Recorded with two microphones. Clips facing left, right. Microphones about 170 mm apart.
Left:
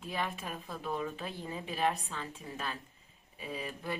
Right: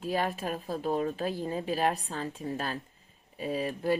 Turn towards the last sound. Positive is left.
turn(degrees=-40)  # may be behind; listen again after turning